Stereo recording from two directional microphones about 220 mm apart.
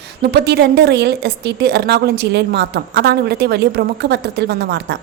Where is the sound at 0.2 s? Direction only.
50° right (ahead or behind).